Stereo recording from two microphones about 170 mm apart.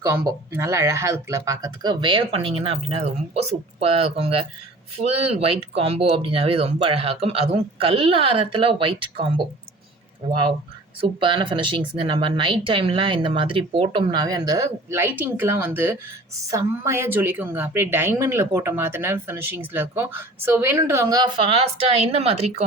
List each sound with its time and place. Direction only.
0.0 s speech: 15° right (ahead or behind); by 9.2 s 30° right (ahead or behind)
11.0 s a woman's voice: 30° right (ahead or behind)